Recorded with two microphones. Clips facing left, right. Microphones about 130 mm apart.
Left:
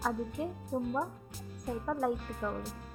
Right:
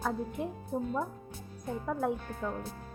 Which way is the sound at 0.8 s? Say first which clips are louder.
Even; 15° left (ahead or behind).